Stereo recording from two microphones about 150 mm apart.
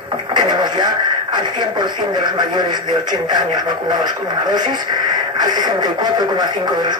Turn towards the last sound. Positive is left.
turn(degrees=-30)  # may be behind; listen again after turning